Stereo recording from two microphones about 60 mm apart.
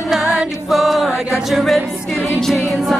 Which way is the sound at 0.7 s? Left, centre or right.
Centre.